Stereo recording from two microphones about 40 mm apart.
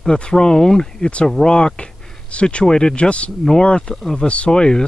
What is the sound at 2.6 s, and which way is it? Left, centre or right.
Speech, centre.